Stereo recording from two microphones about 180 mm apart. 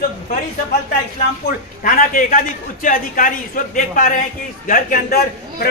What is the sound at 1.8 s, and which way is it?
A man's voice, 45° left (ahead or behind).